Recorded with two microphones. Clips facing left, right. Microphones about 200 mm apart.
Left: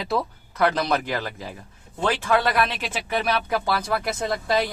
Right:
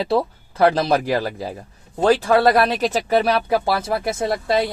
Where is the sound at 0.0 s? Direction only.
30° right (ahead or behind).